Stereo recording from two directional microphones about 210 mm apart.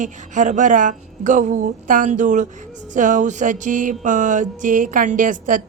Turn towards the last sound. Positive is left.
turn(degrees=-40)  # may be behind; listen again after turning